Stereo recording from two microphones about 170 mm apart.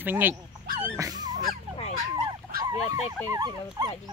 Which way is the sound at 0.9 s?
20° right (ahead or behind).